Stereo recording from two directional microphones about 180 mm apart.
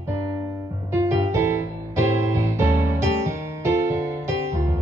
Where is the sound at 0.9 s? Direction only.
15° right (ahead or behind).